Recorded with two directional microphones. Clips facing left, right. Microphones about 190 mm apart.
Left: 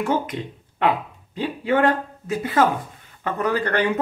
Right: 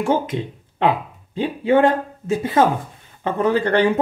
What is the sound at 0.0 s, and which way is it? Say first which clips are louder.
Speech: right 3 dB; 25° right (ahead or behind).